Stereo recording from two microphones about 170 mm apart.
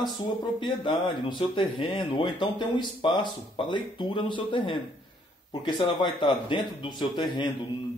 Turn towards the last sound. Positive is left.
turn(degrees=25)  # may be behind; listen again after turning